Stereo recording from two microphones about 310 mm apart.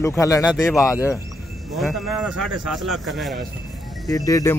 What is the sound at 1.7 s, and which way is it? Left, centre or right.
Speech, centre.